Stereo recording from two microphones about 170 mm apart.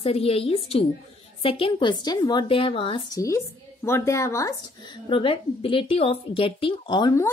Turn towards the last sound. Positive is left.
turn(degrees=25)  # may be behind; listen again after turning